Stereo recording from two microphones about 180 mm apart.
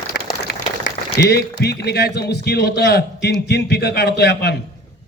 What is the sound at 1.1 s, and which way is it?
A man's voice, 65° left (ahead or behind).